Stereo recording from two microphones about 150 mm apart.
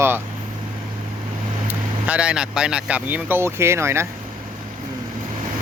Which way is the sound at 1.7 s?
10° right (ahead or behind).